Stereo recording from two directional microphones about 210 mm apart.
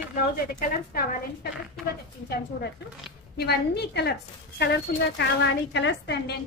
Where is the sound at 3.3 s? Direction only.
50° left (ahead or behind).